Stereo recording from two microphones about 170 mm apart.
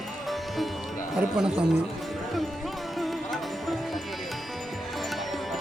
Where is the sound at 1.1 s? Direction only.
5° right (ahead or behind).